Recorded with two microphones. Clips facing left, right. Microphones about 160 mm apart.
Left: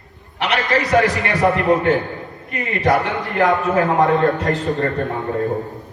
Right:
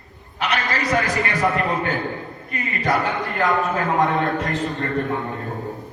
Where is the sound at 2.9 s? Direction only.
65° left (ahead or behind).